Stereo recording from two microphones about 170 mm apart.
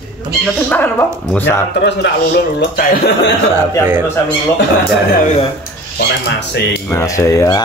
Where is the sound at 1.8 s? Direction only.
80° left.